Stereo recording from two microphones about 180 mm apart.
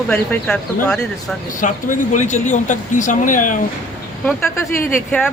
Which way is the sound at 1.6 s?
45° left (ahead or behind).